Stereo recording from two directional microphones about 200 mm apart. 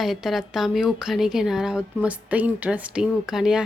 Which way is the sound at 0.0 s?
Centre (ahead or behind).